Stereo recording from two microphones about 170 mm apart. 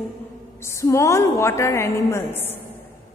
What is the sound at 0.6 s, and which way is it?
A woman's voice, 15° left (ahead or behind).